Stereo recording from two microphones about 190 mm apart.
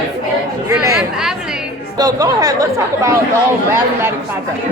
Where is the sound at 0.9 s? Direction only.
5° right (ahead or behind).